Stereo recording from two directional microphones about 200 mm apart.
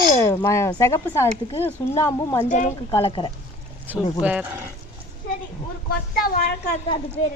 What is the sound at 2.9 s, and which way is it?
Speech, 20° left (ahead or behind).